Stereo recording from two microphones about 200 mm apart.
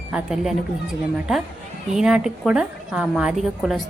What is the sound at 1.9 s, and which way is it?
A woman's voice, 5° right (ahead or behind).